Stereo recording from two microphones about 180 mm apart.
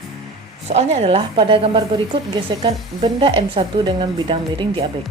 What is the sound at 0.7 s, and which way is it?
A woman's voice, 35° right (ahead or behind).